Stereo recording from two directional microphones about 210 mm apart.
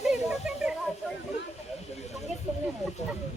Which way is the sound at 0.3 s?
Centre (ahead or behind).